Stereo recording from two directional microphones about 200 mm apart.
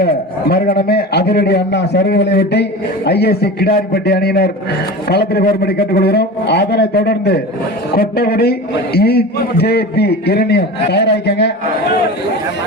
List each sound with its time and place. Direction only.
0.0 s a man's voice: 50° left (ahead or behind)